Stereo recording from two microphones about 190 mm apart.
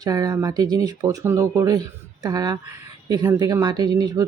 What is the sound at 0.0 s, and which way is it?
Speech, 20° right (ahead or behind).